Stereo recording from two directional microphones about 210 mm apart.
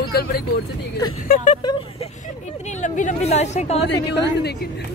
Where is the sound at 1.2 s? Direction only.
40° left (ahead or behind).